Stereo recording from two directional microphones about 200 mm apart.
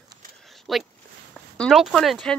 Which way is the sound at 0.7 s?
Centre (ahead or behind).